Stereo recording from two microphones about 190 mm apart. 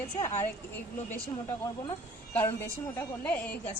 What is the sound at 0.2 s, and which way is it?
Speech, 35° left (ahead or behind).